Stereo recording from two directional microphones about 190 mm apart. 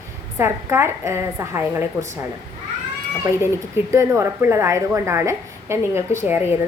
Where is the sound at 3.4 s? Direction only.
15° right (ahead or behind).